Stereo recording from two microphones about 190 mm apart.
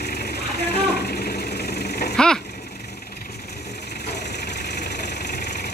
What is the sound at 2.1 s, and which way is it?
Vehicle, 5° left (ahead or behind).